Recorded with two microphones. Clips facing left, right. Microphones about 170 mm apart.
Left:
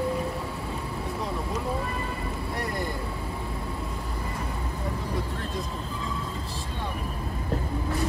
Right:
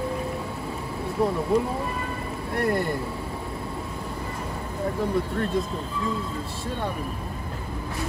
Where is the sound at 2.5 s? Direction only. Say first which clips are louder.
Right 9 dB; 60° right (ahead or behind).